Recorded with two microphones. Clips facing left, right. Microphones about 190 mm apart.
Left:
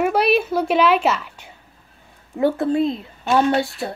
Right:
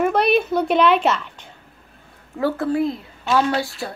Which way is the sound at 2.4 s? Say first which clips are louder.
Left 2 dB; 25° left (ahead or behind).